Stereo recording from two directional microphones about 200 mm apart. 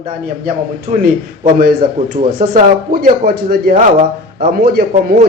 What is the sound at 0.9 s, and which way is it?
Speech, 35° right (ahead or behind).